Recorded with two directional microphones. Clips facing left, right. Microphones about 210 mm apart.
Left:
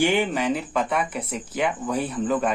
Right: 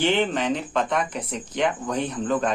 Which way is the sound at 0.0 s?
10° left (ahead or behind).